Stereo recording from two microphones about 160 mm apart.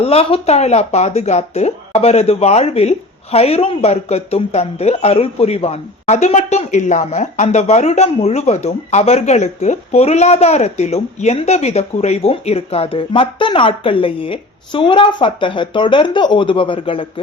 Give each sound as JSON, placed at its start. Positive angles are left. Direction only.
{"t": 0.0, "sound": "speech", "side_deg": 40}